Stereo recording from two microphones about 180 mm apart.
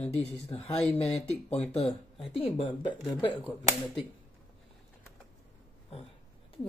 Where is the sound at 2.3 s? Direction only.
30° left (ahead or behind).